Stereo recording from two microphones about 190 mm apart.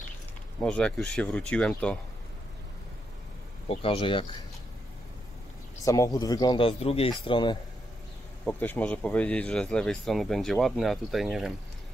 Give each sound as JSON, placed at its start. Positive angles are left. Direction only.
{"t": 0.6, "sound": "speech", "side_deg": 5}
{"t": 3.6, "sound": "a man's voice", "side_deg": 30}
{"t": 5.9, "sound": "a man's voice", "side_deg": 20}
{"t": 8.5, "sound": "speech", "side_deg": 10}